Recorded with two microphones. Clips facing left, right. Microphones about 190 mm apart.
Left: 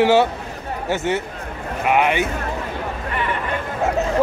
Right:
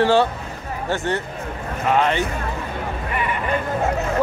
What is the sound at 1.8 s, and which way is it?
Speech, 15° left (ahead or behind).